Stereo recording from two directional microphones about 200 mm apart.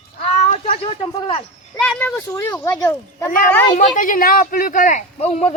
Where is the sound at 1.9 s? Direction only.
10° left (ahead or behind).